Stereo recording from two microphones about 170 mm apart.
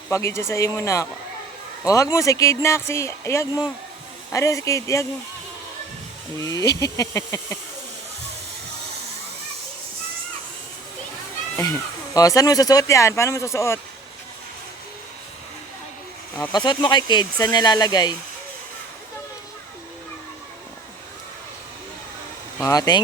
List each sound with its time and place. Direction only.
0.1 s speech: 15° left (ahead or behind)
2.1 s speech: 20° left (ahead or behind)
6.3 s speech: 20° left (ahead or behind)
11.5 s speech: 20° left (ahead or behind)
16.5 s speech: 25° left (ahead or behind)
22.6 s speech: 20° left (ahead or behind)